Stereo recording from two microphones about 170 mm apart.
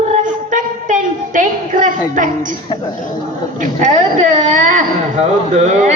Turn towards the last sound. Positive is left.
turn(degrees=-40)  # may be behind; listen again after turning